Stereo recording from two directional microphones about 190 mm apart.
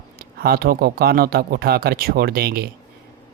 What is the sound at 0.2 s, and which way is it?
Speech, 55° right (ahead or behind).